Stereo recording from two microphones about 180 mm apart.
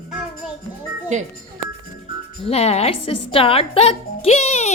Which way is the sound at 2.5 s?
35° left (ahead or behind).